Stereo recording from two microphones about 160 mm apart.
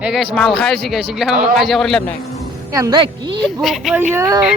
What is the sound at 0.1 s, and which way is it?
A man's voice, centre (ahead or behind).